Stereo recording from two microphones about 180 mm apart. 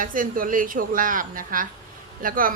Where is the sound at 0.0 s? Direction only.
50° right (ahead or behind).